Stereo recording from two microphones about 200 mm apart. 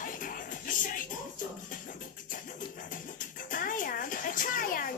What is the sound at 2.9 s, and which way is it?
Music, 40° left (ahead or behind).